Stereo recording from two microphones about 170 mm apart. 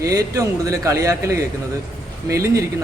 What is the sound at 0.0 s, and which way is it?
Speech, 20° right (ahead or behind).